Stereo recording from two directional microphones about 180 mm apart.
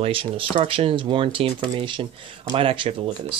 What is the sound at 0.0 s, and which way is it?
Speech, 30° right (ahead or behind).